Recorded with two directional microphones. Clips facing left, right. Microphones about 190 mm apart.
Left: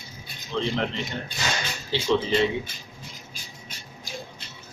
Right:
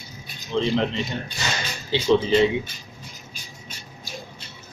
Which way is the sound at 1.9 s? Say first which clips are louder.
Right 4 dB; 15° right (ahead or behind).